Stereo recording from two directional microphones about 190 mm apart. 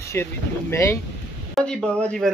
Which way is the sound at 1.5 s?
5° left (ahead or behind).